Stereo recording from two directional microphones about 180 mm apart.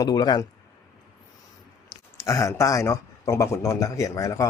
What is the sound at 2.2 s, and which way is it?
A man's voice, 15° left (ahead or behind).